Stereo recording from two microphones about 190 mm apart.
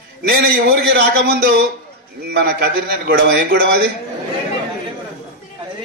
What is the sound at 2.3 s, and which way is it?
A man's voice, 60° right (ahead or behind).